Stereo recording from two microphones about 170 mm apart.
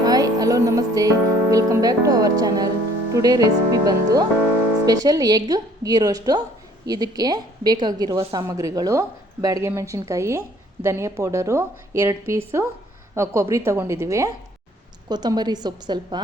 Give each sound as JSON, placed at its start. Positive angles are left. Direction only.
{"t": 0.0, "sound": "a woman's voice", "side_deg": -20}